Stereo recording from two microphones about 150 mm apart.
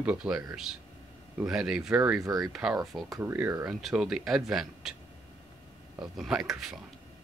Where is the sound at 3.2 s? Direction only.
15° right (ahead or behind).